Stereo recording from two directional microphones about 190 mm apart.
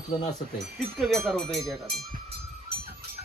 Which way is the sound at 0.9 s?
Centre (ahead or behind).